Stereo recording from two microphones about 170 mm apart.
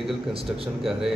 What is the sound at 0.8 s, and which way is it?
Speech, 5° right (ahead or behind).